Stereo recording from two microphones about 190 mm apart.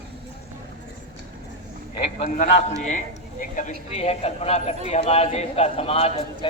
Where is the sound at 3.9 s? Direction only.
35° left (ahead or behind).